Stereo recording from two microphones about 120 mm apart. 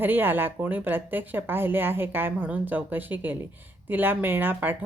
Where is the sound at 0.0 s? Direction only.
15° right (ahead or behind).